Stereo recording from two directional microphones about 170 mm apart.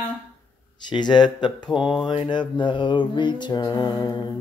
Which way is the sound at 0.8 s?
25° left (ahead or behind).